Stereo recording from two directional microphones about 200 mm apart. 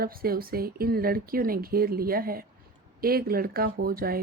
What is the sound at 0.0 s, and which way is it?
Speech, 50° right (ahead or behind).